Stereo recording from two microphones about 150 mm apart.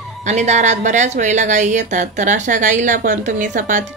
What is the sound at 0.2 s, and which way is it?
A woman's voice, 50° right (ahead or behind).